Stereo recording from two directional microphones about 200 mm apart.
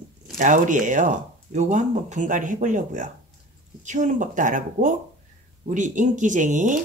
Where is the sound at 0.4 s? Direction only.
40° right (ahead or behind).